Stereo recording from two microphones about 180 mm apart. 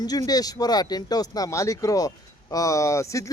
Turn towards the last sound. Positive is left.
turn(degrees=15)  # may be behind; listen again after turning